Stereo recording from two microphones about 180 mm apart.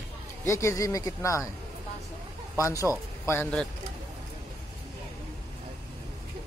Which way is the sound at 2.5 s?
15° left (ahead or behind).